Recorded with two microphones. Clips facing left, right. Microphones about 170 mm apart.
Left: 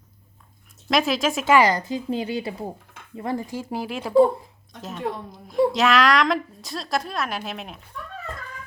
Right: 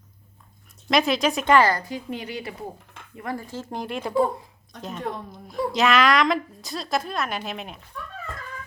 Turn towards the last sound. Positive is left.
turn(degrees=0)  # may be behind; listen again after turning